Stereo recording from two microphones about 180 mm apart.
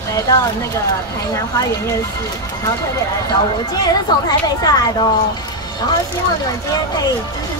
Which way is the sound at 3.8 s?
20° left (ahead or behind).